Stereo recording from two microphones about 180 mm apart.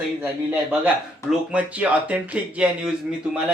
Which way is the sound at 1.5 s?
10° right (ahead or behind).